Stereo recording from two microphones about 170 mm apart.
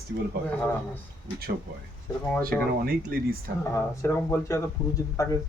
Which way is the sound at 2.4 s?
60° right (ahead or behind).